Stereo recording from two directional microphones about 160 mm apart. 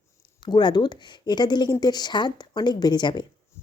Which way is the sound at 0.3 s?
30° left (ahead or behind).